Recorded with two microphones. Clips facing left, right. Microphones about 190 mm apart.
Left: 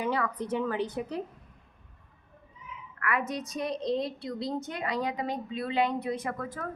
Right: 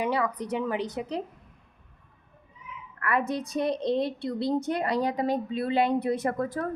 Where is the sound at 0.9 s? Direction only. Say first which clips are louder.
Right 1 dB; 85° right.